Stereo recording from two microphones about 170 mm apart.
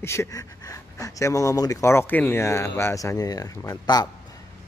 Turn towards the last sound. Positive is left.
turn(degrees=25)  # may be behind; listen again after turning